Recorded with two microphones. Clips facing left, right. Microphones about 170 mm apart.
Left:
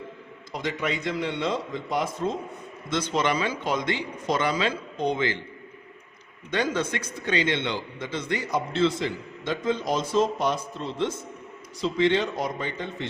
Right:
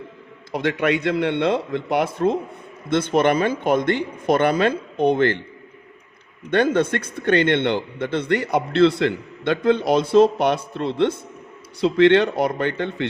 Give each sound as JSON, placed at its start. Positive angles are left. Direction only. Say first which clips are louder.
{"t": 0.5, "sound": "a man's voice", "louder": "right 8 dB", "side_deg": -65}
{"t": 6.5, "sound": "a man's voice", "louder": "right 8 dB", "side_deg": -60}